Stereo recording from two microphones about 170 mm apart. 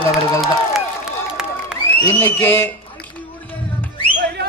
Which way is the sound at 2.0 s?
15° left (ahead or behind).